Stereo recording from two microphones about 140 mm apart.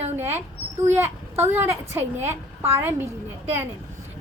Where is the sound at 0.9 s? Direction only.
15° right (ahead or behind).